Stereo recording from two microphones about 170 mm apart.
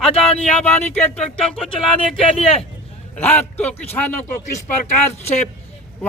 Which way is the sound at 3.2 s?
10° left (ahead or behind).